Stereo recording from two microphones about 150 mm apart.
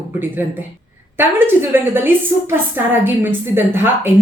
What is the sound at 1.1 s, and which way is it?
A woman's voice, 15° right (ahead or behind).